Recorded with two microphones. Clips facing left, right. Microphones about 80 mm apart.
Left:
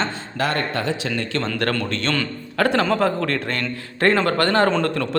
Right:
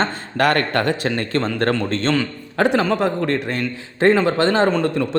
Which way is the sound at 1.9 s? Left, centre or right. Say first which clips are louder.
Right 4 dB; right.